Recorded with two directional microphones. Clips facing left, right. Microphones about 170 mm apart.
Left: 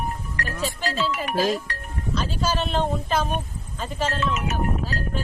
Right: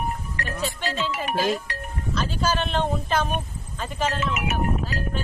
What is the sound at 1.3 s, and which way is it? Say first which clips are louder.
Speech: left 1 dB; 40° left (ahead or behind).